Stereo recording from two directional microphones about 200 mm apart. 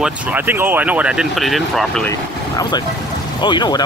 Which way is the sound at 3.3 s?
20° left (ahead or behind).